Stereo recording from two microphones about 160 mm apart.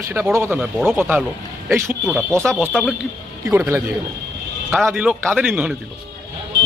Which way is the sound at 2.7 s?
Centre (ahead or behind).